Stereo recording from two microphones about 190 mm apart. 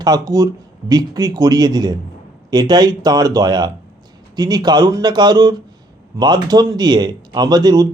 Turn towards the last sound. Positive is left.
turn(degrees=-20)  # may be behind; listen again after turning